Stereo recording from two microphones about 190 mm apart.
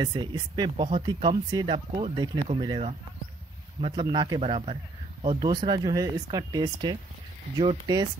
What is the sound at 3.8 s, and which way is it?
Speech, 25° right (ahead or behind).